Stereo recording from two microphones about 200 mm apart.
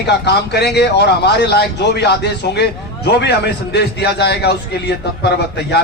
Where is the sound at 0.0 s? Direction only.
55° left (ahead or behind).